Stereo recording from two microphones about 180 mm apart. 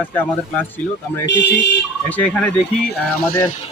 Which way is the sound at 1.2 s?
75° left (ahead or behind).